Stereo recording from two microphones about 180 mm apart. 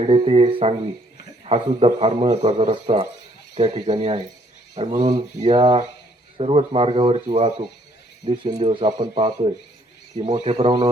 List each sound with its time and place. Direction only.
0.0 s a man's voice: 30° right (ahead or behind)
8.5 s a man's voice: 30° right (ahead or behind)